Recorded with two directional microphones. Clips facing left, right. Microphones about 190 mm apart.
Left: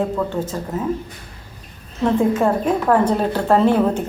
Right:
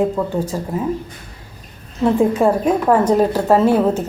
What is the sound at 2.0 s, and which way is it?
A woman's voice, 10° right (ahead or behind).